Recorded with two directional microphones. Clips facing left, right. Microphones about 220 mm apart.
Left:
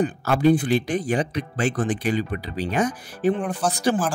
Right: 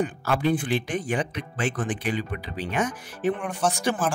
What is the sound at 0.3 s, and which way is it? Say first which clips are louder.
Speech: left 6 dB; 40° left (ahead or behind).